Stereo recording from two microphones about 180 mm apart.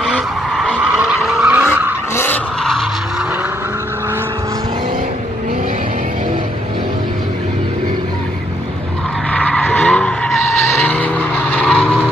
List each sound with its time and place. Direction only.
0.0 s vehicle: centre (ahead or behind)
2.1 s vehicle: 10° left (ahead or behind)
9.3 s skidding: 5° left (ahead or behind)
10.7 s vehicle: 10° left (ahead or behind)